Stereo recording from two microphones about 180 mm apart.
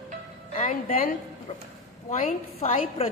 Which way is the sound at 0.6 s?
40° left (ahead or behind).